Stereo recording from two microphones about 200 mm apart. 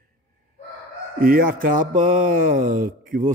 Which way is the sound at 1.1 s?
45° right (ahead or behind).